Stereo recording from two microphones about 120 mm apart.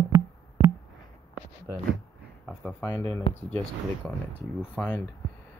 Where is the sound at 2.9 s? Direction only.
20° left (ahead or behind).